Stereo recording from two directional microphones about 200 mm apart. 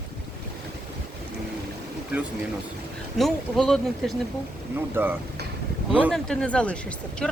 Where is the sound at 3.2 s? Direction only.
Centre (ahead or behind).